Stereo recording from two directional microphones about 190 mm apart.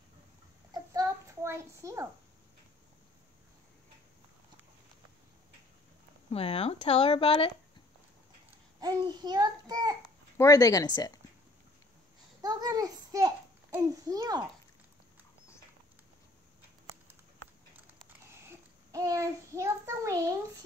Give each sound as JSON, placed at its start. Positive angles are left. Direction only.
{"t": 0.7, "sound": "a sound", "side_deg": -15}
{"t": 6.3, "sound": "speech", "side_deg": 30}
{"t": 9.0, "sound": "a child's voice", "side_deg": -20}
{"t": 10.3, "sound": "speech", "side_deg": 15}
{"t": 12.4, "sound": "a child's voice", "side_deg": -20}
{"t": 16.8, "sound": "run", "side_deg": -10}
{"t": 17.9, "sound": "a sound", "side_deg": -15}